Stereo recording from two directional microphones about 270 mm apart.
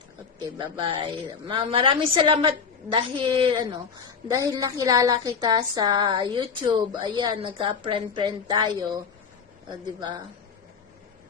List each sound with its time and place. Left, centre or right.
0.3 s a woman's voice: centre